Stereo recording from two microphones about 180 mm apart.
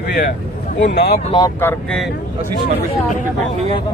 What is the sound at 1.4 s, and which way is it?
Speech, 15° left (ahead or behind).